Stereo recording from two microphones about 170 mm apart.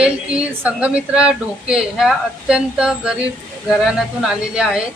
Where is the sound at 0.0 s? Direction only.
5° right (ahead or behind).